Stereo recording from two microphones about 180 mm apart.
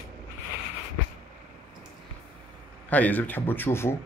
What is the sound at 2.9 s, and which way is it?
Speech, 10° left (ahead or behind).